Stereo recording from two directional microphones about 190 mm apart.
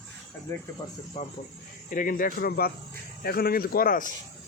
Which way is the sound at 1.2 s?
35° left (ahead or behind).